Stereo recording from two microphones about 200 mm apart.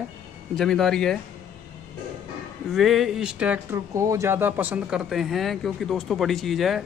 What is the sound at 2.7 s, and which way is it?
Speech, centre (ahead or behind).